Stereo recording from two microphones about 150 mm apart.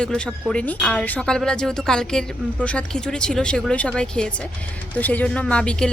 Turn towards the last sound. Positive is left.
turn(degrees=5)  # may be behind; listen again after turning